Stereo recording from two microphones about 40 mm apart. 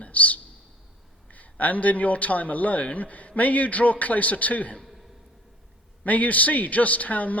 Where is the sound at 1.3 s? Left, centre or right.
Left.